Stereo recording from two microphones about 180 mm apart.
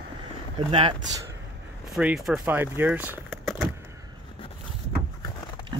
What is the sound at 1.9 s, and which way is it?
Speech, 5° right (ahead or behind).